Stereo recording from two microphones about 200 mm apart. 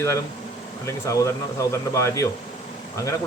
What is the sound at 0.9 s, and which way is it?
Speech, 15° left (ahead or behind).